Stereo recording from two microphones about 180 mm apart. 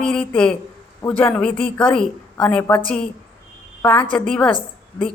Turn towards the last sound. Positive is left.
turn(degrees=30)  # may be behind; listen again after turning